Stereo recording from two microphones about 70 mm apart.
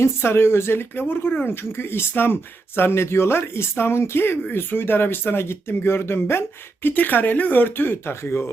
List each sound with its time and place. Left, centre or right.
0.0 s speech: left